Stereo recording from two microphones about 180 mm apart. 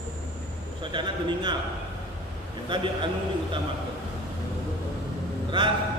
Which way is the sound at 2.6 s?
25° right (ahead or behind).